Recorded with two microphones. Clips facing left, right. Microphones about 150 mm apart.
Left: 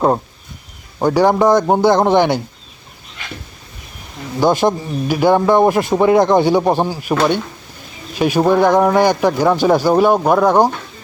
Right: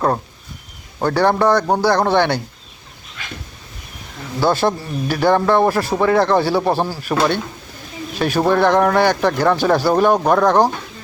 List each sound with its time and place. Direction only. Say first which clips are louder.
0.9 s speech: left 3 dB; 15° left (ahead or behind)
4.4 s speech: left 3 dB; 15° left (ahead or behind)
8.2 s speech: left 3 dB; 15° left (ahead or behind)